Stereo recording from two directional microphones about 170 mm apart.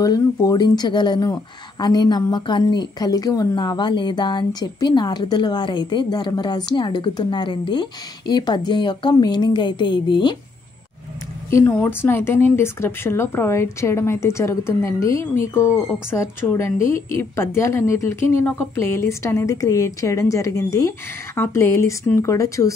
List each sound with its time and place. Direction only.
0.0 s speech: 20° left (ahead or behind)
11.5 s a woman's voice: 10° left (ahead or behind)